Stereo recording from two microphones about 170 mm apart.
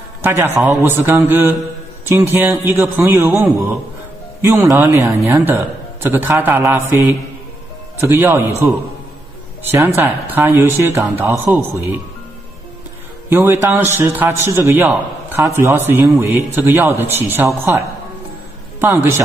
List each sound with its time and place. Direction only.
0.2 s a man's voice: 15° right (ahead or behind)
4.4 s a man's voice: 15° right (ahead or behind)
13.3 s a man's voice: 10° right (ahead or behind)